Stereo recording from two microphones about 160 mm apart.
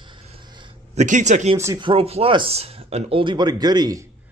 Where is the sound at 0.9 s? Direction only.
50° right (ahead or behind).